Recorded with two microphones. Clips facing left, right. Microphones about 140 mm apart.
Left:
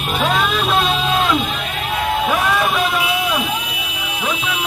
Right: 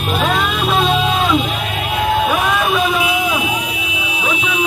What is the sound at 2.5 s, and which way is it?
Vehicle, 5° right (ahead or behind).